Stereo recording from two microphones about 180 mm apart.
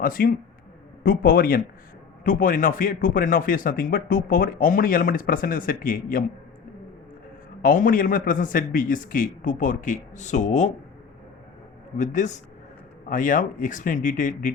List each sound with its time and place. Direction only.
0.0 s a man's voice: 50° left (ahead or behind)
7.6 s speech: 50° left (ahead or behind)
11.9 s speech: 40° left (ahead or behind)